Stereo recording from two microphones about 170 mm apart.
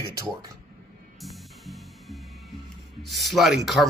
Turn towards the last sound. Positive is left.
turn(degrees=0)  # may be behind; listen again after turning